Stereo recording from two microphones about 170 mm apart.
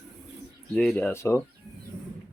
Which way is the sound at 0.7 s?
5° left (ahead or behind).